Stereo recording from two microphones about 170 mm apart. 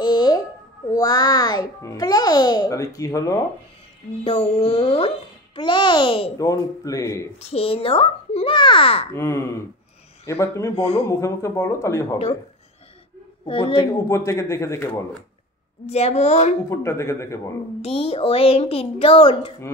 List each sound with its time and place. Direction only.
0.0 s a sound: 25° left (ahead or behind)
0.9 s a child's voice: 20° left (ahead or behind)
4.2 s a woman's voice: 35° left (ahead or behind)
6.3 s a child's voice: 20° left (ahead or behind)
7.3 s a woman's voice: 35° left (ahead or behind)
9.1 s a man's voice: 15° left (ahead or behind)
10.8 s a woman's voice: 35° left (ahead or behind)
11.1 s a man's voice: 15° left (ahead or behind)
13.5 s a woman's voice: 35° left (ahead or behind)
13.9 s a man's voice: 15° left (ahead or behind)
15.9 s a woman's voice: 40° left (ahead or behind)
16.6 s a man's voice: 15° left (ahead or behind)
17.8 s a woman's voice: 35° left (ahead or behind)